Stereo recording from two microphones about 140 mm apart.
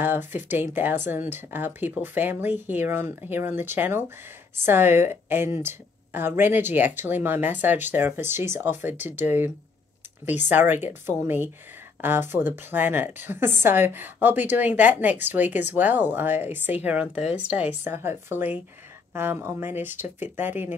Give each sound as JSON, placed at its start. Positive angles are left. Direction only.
{"t": 0.0, "sound": "a woman's voice", "side_deg": -15}